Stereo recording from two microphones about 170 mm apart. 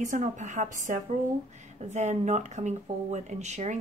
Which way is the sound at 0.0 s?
45° right (ahead or behind).